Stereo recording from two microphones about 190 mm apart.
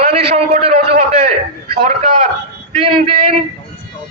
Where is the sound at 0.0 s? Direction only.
30° right (ahead or behind).